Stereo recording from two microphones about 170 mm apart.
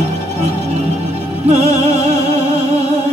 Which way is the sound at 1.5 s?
40° right (ahead or behind).